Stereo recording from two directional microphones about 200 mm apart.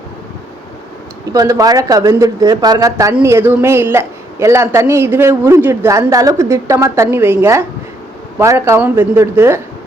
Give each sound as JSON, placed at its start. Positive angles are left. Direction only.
{"t": 1.3, "sound": "speech", "side_deg": -15}